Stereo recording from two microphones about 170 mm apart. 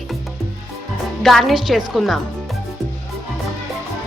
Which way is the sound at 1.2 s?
Centre (ahead or behind).